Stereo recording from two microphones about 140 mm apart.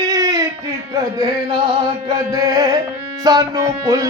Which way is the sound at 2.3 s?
25° right (ahead or behind).